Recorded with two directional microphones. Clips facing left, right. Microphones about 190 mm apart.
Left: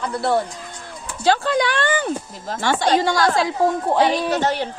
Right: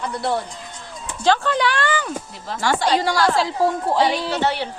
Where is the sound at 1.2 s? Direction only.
40° left (ahead or behind).